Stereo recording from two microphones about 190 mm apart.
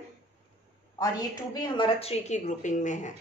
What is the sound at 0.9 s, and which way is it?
A woman's voice, 20° left (ahead or behind).